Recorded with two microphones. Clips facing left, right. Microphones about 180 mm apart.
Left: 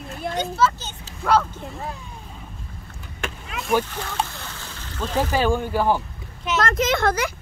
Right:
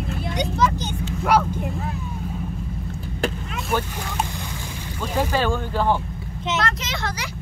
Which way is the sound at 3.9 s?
15° right (ahead or behind).